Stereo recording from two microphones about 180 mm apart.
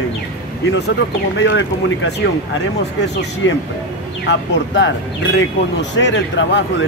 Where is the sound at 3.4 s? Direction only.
90° left.